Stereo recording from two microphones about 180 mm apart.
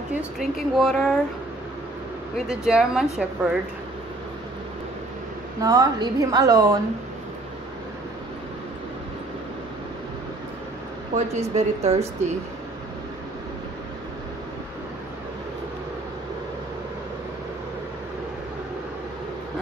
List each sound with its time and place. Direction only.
0.4 s a woman's voice: centre (ahead or behind)
2.3 s a woman's voice: centre (ahead or behind)
5.6 s a woman's voice: 20° right (ahead or behind)
11.3 s a woman's voice: 35° right (ahead or behind)